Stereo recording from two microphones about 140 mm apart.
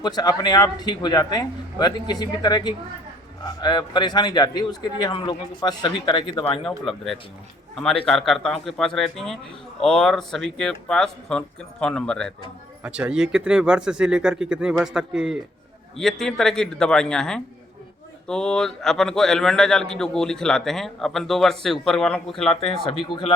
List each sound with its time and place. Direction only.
0.0 s a man's voice: 30° left (ahead or behind)
6.7 s speech: centre (ahead or behind)
12.8 s speech: 10° right (ahead or behind)